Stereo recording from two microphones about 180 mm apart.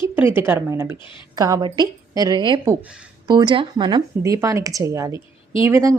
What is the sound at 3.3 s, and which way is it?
A woman's voice, 25° right (ahead or behind).